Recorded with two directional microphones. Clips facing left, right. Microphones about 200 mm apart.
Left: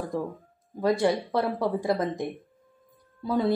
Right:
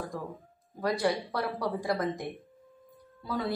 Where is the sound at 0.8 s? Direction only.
25° left (ahead or behind).